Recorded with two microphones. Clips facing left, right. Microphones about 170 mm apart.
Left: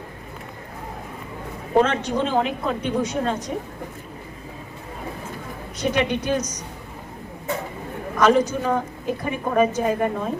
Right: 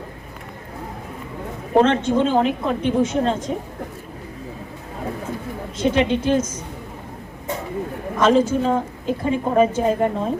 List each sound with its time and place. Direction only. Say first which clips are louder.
1.7 s a woman's voice: right 3 dB; 25° right (ahead or behind)
5.8 s a woman's voice: right 4 dB; 25° right (ahead or behind)
8.2 s a woman's voice: right 2 dB; 25° right (ahead or behind)